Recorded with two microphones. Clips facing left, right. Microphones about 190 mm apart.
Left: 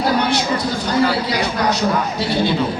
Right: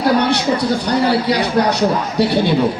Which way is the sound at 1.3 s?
65° right (ahead or behind).